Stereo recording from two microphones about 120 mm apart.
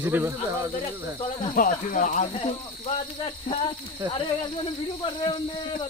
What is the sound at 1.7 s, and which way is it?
Speech, 90° left.